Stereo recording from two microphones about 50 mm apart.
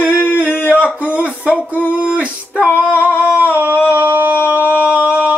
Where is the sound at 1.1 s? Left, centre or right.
Right.